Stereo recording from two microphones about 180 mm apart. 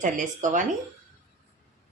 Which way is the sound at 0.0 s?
45° right (ahead or behind).